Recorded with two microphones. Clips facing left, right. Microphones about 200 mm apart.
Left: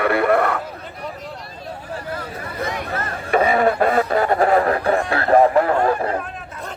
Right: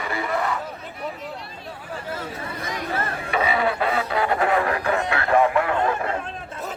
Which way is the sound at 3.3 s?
45° left (ahead or behind).